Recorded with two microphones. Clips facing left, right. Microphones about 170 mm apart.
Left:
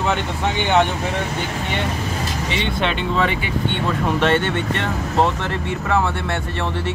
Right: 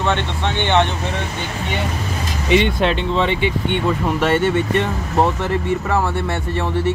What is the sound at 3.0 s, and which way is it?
Speech, 25° right (ahead or behind).